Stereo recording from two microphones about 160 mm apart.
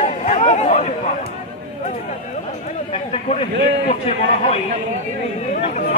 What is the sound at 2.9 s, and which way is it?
A man's voice, 40° left (ahead or behind).